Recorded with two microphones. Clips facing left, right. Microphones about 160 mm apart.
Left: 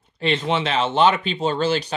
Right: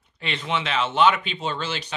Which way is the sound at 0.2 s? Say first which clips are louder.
Left 6 dB; 35° left (ahead or behind).